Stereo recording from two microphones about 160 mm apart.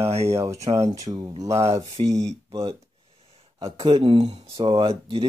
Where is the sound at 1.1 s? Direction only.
25° right (ahead or behind).